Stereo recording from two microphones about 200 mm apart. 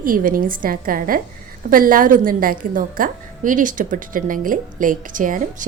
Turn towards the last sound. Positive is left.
turn(degrees=-40)  # may be behind; listen again after turning